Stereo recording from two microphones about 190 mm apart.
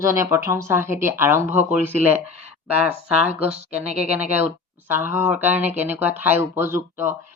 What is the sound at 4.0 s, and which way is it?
Speech, 5° right (ahead or behind).